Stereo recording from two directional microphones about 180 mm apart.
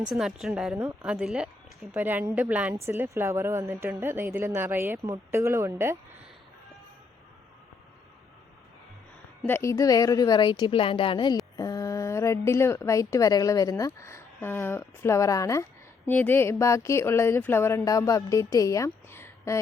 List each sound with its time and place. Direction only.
0.0 s a woman's voice: 5° right (ahead or behind)
9.5 s a woman's voice: 15° left (ahead or behind)